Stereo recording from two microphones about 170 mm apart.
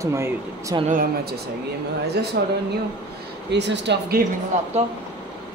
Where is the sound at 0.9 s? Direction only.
55° right (ahead or behind).